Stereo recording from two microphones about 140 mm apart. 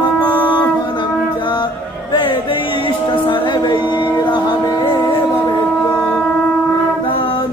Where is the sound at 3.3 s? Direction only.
35° left (ahead or behind).